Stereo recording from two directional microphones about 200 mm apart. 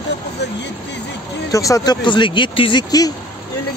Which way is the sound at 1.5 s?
15° left (ahead or behind).